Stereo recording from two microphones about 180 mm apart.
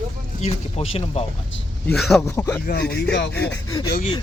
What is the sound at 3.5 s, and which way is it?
Speech, 20° left (ahead or behind).